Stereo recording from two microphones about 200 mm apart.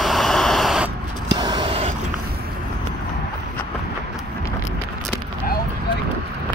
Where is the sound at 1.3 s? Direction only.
20° right (ahead or behind).